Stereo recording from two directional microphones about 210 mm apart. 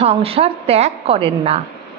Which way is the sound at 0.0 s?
30° right (ahead or behind).